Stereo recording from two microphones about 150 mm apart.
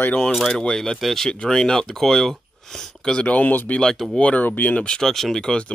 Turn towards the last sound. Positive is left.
turn(degrees=5)  # may be behind; listen again after turning